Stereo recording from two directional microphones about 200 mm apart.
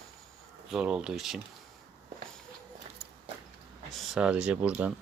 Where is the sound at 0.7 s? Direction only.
5° right (ahead or behind).